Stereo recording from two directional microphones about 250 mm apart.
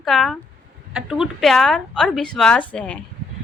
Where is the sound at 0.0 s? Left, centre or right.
Centre.